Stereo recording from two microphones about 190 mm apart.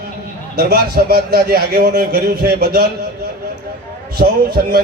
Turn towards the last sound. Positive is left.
turn(degrees=-55)  # may be behind; listen again after turning